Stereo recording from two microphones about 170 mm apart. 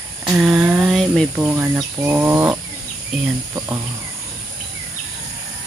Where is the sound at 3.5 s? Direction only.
15° right (ahead or behind).